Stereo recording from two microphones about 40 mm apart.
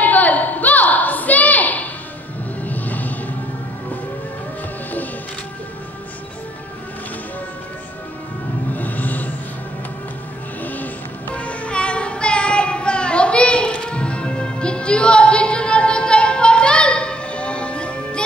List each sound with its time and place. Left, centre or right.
0.0 s a sound: left
8.7 s music: left
10.6 s music: left
11.3 s music: left